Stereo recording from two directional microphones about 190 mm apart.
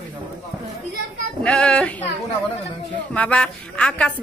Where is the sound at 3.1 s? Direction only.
5° left (ahead or behind).